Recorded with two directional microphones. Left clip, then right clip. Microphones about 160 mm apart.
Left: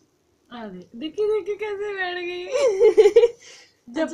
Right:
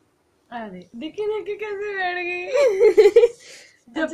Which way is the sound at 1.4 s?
25° left (ahead or behind).